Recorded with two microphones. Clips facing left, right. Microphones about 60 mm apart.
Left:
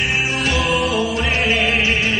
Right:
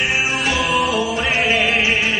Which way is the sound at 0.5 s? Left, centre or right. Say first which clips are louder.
Even; centre.